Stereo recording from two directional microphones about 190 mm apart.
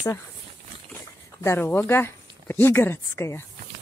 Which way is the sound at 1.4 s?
10° left (ahead or behind).